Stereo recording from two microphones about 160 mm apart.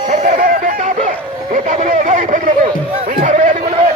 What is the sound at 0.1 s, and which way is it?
Music, 50° right (ahead or behind).